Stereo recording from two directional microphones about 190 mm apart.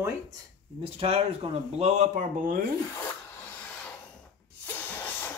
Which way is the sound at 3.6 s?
10° left (ahead or behind).